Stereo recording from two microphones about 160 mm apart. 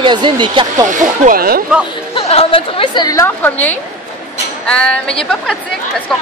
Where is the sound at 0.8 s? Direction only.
55° right (ahead or behind).